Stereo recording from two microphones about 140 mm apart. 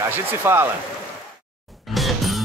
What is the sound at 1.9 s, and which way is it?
Music, centre (ahead or behind).